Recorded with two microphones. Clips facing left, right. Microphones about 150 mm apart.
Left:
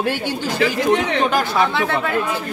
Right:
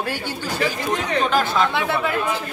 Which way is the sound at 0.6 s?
70° left (ahead or behind).